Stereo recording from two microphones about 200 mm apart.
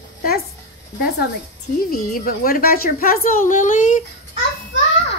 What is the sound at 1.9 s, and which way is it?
A woman's voice, 45° left (ahead or behind).